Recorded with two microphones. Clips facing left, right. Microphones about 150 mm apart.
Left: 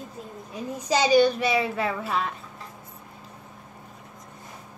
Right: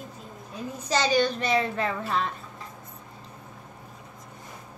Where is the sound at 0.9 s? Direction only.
10° left (ahead or behind).